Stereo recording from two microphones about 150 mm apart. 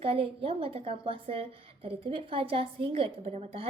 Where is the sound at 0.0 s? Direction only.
40° right (ahead or behind).